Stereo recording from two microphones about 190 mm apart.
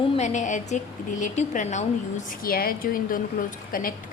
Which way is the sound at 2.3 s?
50° left (ahead or behind).